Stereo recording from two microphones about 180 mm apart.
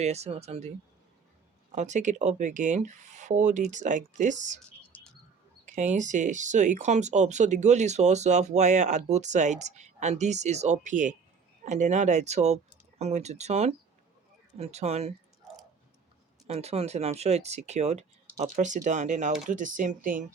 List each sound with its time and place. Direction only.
0.0 s speech: 35° right (ahead or behind)
1.7 s speech: 40° right (ahead or behind)
4.8 s bird: 10° left (ahead or behind)
5.6 s speech: 45° right (ahead or behind)
16.5 s speech: 35° right (ahead or behind)